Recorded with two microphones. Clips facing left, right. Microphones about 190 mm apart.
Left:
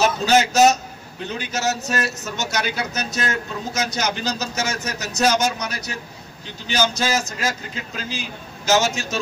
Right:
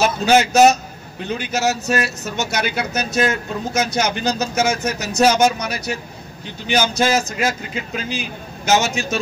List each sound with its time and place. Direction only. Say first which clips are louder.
0.2 s a man's voice: right 4 dB; 55° right (ahead or behind)